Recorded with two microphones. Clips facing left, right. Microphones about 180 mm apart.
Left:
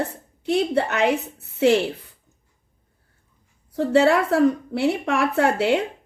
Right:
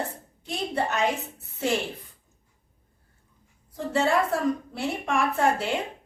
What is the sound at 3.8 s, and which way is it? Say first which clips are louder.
A woman's voice: left 7 dB; 70° left (ahead or behind).